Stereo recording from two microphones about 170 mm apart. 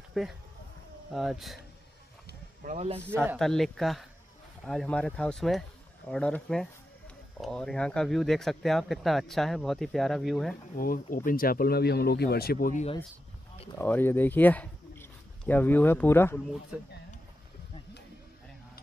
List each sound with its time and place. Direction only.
0.2 s speech: centre (ahead or behind)
2.6 s a man's voice: 50° right (ahead or behind)
3.3 s speech: centre (ahead or behind)
10.8 s speech: 55° left (ahead or behind)
13.7 s speech: 10° left (ahead or behind)
16.7 s speech: 5° right (ahead or behind)